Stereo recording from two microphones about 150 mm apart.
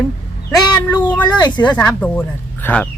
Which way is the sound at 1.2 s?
30° left (ahead or behind).